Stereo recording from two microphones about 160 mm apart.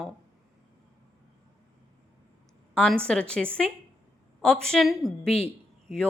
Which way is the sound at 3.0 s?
5° left (ahead or behind).